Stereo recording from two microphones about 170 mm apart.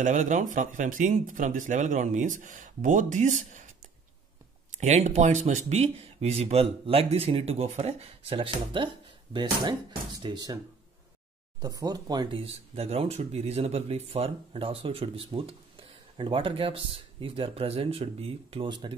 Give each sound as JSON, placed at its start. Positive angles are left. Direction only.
{"t": 0.0, "sound": "speech", "side_deg": -45}
{"t": 4.6, "sound": "speech", "side_deg": -40}
{"t": 11.6, "sound": "speech", "side_deg": -20}